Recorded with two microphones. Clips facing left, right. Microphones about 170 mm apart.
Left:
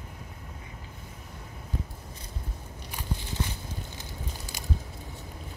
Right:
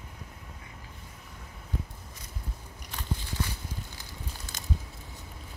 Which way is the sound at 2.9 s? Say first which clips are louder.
Left 1 dB; 15° left (ahead or behind).